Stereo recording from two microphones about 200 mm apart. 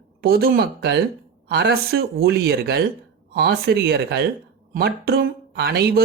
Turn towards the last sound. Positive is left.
turn(degrees=-55)  # may be behind; listen again after turning